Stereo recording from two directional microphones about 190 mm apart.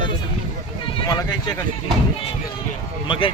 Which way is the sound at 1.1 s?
20° left (ahead or behind).